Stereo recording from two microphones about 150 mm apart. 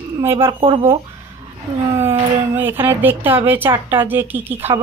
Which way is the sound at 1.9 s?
15° right (ahead or behind).